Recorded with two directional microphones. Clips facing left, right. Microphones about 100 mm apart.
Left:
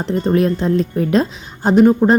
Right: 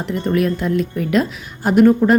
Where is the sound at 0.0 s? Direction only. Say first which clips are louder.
Left 3 dB; 30° left (ahead or behind).